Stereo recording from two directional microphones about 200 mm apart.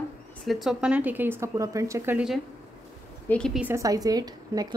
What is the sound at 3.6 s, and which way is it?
A woman's voice, 10° right (ahead or behind).